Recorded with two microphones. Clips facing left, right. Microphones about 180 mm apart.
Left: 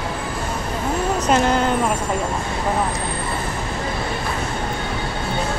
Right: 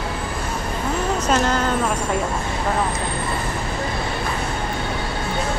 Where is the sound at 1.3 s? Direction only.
15° left (ahead or behind).